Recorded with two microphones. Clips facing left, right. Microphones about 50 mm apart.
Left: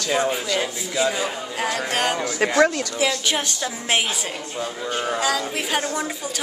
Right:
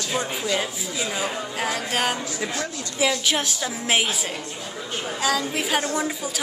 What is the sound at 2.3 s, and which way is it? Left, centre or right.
Speech, left.